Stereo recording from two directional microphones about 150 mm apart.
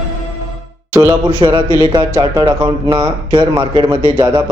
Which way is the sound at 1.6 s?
20° left (ahead or behind).